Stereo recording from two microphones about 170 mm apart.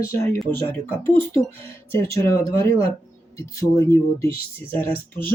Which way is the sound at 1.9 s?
15° left (ahead or behind).